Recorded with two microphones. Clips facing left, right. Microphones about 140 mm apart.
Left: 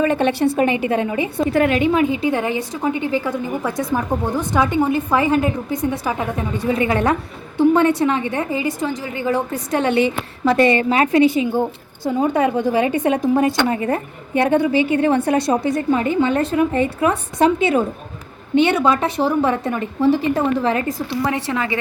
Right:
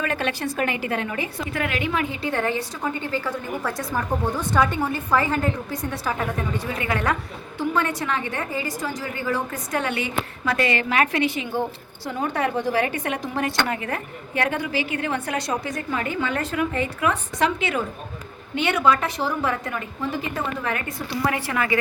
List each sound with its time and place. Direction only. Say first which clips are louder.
0.0 s a woman's voice: left 9 dB; 25° left (ahead or behind)
12.2 s a woman's voice: left 6 dB; 20° left (ahead or behind)